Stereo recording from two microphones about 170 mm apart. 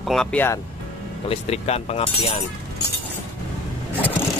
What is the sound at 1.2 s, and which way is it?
Speech, 40° left (ahead or behind).